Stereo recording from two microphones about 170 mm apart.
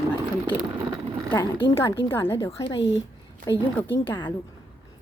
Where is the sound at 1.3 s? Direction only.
15° left (ahead or behind).